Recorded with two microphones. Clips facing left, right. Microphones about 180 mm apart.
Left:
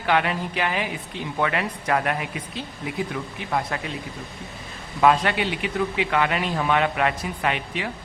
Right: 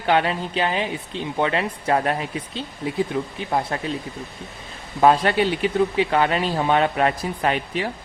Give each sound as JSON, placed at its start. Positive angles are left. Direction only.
{"t": 0.0, "sound": "speech", "side_deg": -30}
{"t": 4.9, "sound": "speech", "side_deg": -35}